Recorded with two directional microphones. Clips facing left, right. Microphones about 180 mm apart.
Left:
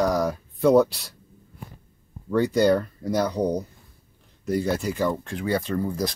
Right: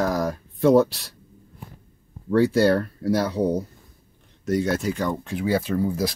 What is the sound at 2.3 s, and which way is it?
Speech, 5° right (ahead or behind).